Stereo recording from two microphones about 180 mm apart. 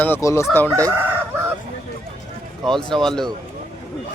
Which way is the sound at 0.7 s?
15° right (ahead or behind).